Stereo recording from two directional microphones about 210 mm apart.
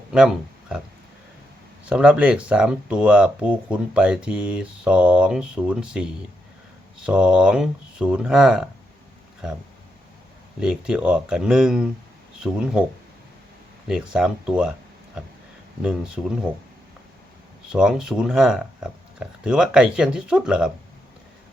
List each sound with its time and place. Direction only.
1.8 s speech: 5° right (ahead or behind)
10.6 s speech: 5° right (ahead or behind)
13.8 s speech: 5° right (ahead or behind)
16.2 s speech: 5° right (ahead or behind)
17.7 s speech: 5° right (ahead or behind)